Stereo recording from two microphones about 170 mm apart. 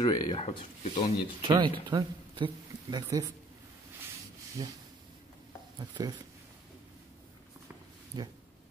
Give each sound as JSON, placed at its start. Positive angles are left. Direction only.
{"t": 0.0, "sound": "speech", "side_deg": 25}
{"t": 0.4, "sound": "speech", "side_deg": 35}
{"t": 1.5, "sound": "a man's voice", "side_deg": -25}
{"t": 4.6, "sound": "a man's voice", "side_deg": -20}
{"t": 5.8, "sound": "a man's voice", "side_deg": -25}
{"t": 8.1, "sound": "a man's voice", "side_deg": -25}